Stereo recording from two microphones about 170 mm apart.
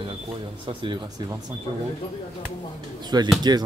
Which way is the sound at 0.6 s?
30° right (ahead or behind).